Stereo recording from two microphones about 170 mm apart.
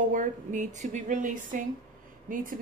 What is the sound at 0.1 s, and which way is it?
Speech, 50° right (ahead or behind).